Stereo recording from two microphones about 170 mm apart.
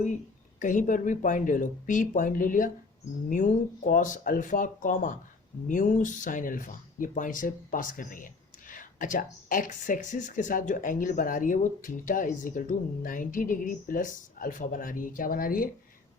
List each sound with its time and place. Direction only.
0.6 s speech: 50° left (ahead or behind)